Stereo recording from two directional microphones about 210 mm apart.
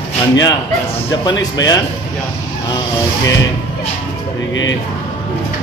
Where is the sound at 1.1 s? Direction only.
20° left (ahead or behind).